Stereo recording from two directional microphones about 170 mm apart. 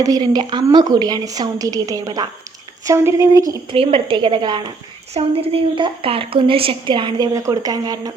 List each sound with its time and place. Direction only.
0.0 s a woman's voice: 20° right (ahead or behind)
3.8 s a woman's voice: 30° right (ahead or behind)
5.1 s a woman's voice: 35° right (ahead or behind)